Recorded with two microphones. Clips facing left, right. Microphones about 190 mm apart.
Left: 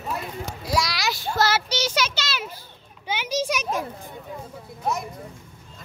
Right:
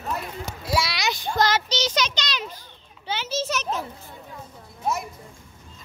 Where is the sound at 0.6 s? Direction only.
Centre (ahead or behind).